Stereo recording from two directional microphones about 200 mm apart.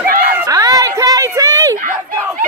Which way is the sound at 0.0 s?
45° right (ahead or behind).